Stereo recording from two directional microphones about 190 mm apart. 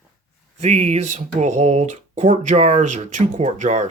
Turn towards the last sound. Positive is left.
turn(degrees=-40)  # may be behind; listen again after turning